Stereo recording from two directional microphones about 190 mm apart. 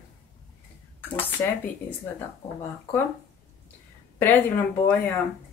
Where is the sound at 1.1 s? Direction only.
10° left (ahead or behind).